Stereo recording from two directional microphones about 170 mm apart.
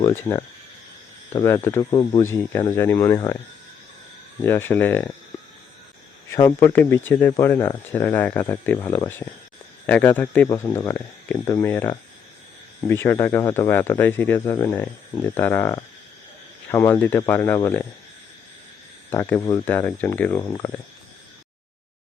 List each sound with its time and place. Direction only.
0.0 s speech: 15° left (ahead or behind)
4.4 s speech: 15° left (ahead or behind)
6.3 s speech: 20° left (ahead or behind)
19.1 s speech: 15° left (ahead or behind)